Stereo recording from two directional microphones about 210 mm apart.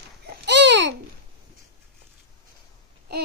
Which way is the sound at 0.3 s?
55° right (ahead or behind).